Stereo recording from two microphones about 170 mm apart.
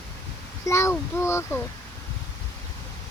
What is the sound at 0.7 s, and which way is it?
Speech, 15° left (ahead or behind).